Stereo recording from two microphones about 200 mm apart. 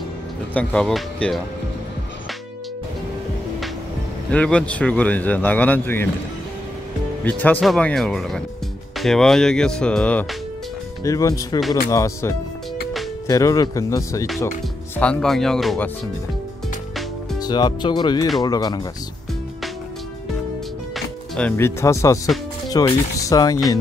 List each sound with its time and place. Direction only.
0.6 s speech: 5° left (ahead or behind)
4.3 s speech: 5° left (ahead or behind)
7.2 s speech: 10° left (ahead or behind)
11.1 s speech: 15° left (ahead or behind)
15.0 s speech: 5° left (ahead or behind)
17.4 s speech: 20° left (ahead or behind)
20.9 s speech: 5° left (ahead or behind)